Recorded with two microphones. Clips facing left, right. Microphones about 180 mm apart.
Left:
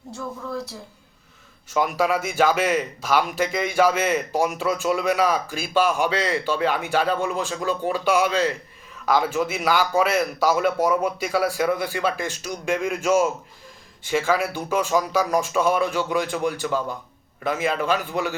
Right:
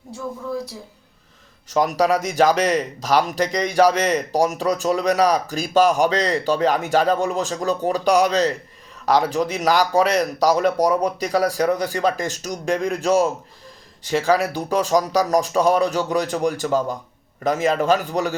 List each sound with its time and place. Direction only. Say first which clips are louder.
1.7 s a man's voice: right 3 dB; 40° right (ahead or behind)